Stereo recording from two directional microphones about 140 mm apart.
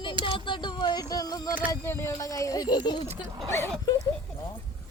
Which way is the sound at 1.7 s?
15° left (ahead or behind).